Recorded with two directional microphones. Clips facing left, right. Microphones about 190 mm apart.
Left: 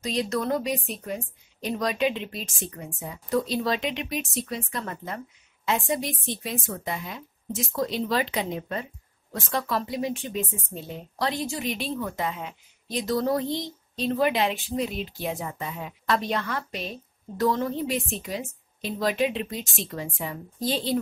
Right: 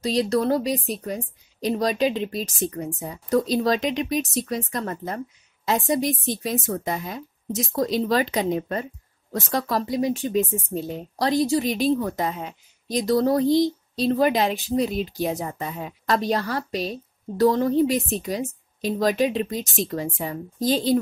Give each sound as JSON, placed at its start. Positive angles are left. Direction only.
{"t": 0.0, "sound": "speech", "side_deg": -35}